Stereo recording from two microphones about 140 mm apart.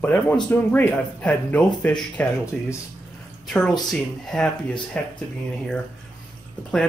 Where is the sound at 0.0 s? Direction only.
10° left (ahead or behind).